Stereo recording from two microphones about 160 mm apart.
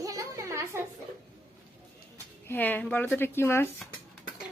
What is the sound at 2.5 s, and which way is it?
A woman's voice, 10° left (ahead or behind).